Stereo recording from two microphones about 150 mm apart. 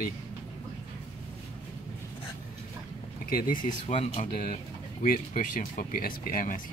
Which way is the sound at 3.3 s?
80° left.